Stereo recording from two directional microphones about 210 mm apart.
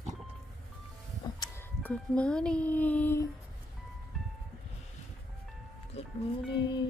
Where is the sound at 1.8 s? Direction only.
5° left (ahead or behind).